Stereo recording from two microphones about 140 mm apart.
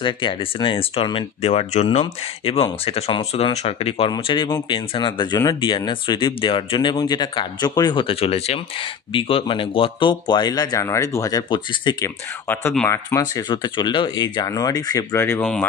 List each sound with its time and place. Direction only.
0.0 s speech: 35° left (ahead or behind)
12.8 s speech: 20° left (ahead or behind)
13.5 s speech: 35° left (ahead or behind); by 15.4 s 15° left (ahead or behind)